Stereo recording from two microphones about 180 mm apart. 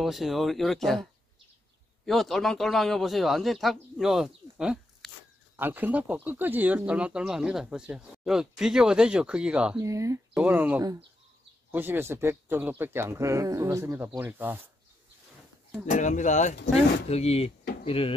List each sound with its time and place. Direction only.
0.0 s speech: centre (ahead or behind)
2.0 s speech: centre (ahead or behind)
9.8 s speech: 15° right (ahead or behind)
15.9 s speech: 45° left (ahead or behind)